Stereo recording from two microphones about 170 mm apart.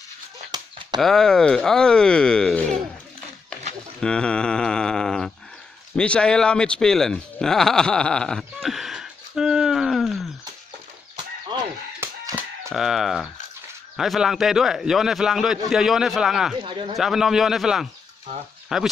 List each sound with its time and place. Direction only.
0.5 s a sound: 25° right (ahead or behind)
1.0 s a man's voice: 5° left (ahead or behind)
4.0 s a sound: 5° left (ahead or behind)
5.9 s speech: 5° left (ahead or behind)
11.5 s fowl: 30° right (ahead or behind)
12.0 s a sound: 15° right (ahead or behind)
12.7 s a man's voice: centre (ahead or behind)
16.6 s speech: 30° right (ahead or behind)
16.9 s a man's voice: centre (ahead or behind)